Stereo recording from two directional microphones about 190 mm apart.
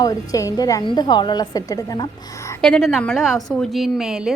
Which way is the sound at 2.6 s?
5° left (ahead or behind).